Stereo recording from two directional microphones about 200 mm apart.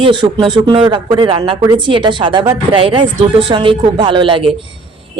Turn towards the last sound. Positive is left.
turn(degrees=-25)  # may be behind; listen again after turning